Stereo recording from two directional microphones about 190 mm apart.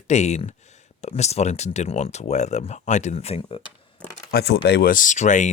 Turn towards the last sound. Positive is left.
turn(degrees=40)  # may be behind; listen again after turning